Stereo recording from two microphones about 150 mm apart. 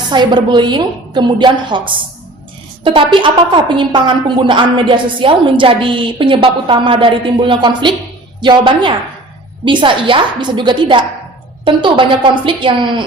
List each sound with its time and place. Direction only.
0.1 s a woman's voice: 30° right (ahead or behind)